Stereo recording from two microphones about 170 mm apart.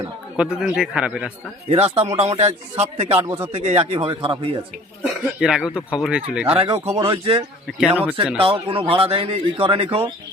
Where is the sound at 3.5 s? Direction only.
35° right (ahead or behind).